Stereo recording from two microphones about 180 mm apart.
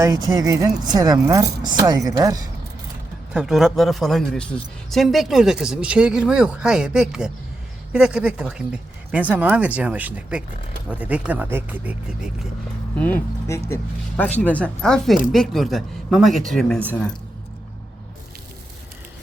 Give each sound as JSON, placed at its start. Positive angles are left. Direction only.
{"t": 0.0, "sound": "speech", "side_deg": -20}
{"t": 3.3, "sound": "a man's voice", "side_deg": 0}
{"t": 13.0, "sound": "a man's voice", "side_deg": 10}